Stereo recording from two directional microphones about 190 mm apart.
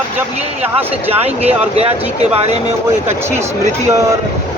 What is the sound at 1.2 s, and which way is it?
Speech, 35° right (ahead or behind).